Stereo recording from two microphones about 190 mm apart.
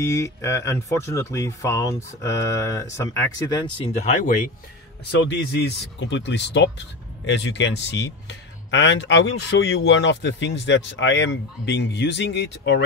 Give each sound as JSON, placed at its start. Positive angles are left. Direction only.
{"t": 0.0, "sound": "speech", "side_deg": 15}
{"t": 5.1, "sound": "speech", "side_deg": 65}